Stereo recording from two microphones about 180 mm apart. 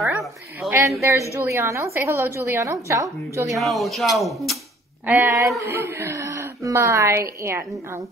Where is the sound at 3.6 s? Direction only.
Centre (ahead or behind).